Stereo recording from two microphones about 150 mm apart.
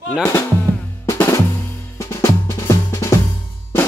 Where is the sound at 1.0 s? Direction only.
15° left (ahead or behind).